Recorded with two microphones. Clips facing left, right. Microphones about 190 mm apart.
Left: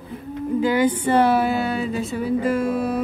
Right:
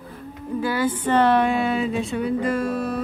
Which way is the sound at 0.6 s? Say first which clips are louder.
Left 4 dB; 15° left (ahead or behind).